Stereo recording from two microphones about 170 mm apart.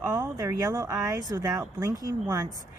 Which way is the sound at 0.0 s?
20° right (ahead or behind).